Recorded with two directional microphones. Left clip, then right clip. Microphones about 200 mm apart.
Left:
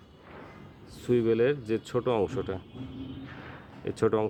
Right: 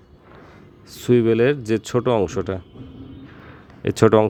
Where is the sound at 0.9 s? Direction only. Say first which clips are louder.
Right 8 dB; 40° right (ahead or behind).